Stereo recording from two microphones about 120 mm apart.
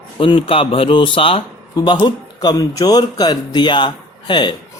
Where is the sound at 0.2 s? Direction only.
45° left (ahead or behind).